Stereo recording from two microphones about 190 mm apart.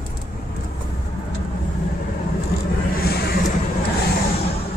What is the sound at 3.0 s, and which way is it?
Vehicle, 55° left (ahead or behind).